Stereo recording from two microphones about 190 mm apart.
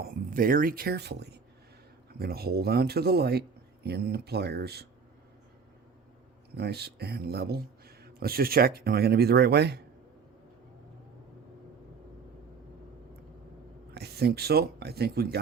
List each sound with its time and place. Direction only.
0.0 s speech: 50° right (ahead or behind)
6.6 s speech: 60° right (ahead or behind)
13.9 s speech: 60° right (ahead or behind)